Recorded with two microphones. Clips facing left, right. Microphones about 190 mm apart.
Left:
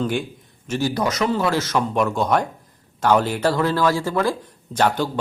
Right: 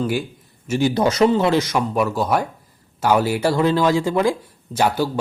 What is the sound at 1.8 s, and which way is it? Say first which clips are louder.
Speech: even; 5° right (ahead or behind).